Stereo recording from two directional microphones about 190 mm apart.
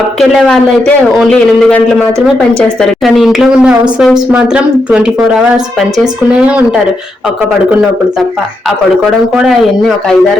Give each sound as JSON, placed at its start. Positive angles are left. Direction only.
{"t": 0.2, "sound": "a woman's voice", "side_deg": 0}
{"t": 9.3, "sound": "a woman's voice", "side_deg": -5}